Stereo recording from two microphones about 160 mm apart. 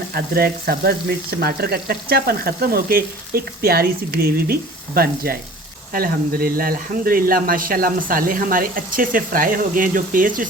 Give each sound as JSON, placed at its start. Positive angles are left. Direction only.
{"t": 0.1, "sound": "frying", "side_deg": -70}
{"t": 5.9, "sound": "speech", "side_deg": -65}